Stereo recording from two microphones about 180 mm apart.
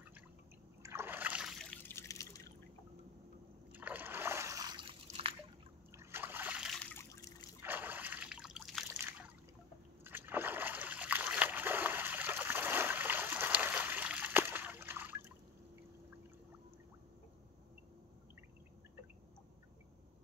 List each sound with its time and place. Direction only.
0.8 s a sound: 15° right (ahead or behind)
1.6 s drip: 10° left (ahead or behind)
3.7 s splash: 10° right (ahead or behind); by 5.3 s 30° right (ahead or behind)
5.9 s splash: 10° right (ahead or behind)
6.8 s trickle: 15° left (ahead or behind)
7.6 s a sound: 10° right (ahead or behind)
8.8 s trickle: 15° right (ahead or behind)
10.0 s splash: 10° right (ahead or behind)